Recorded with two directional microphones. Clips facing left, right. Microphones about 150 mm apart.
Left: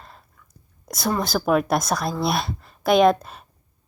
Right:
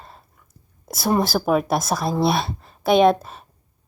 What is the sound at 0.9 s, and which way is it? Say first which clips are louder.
A woman's voice: right 3 dB; 5° right (ahead or behind).